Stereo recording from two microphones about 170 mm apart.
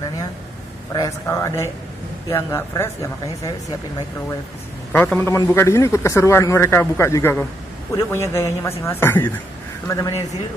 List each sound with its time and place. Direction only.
0.9 s speech: 20° left (ahead or behind)
4.9 s speech: 10° left (ahead or behind)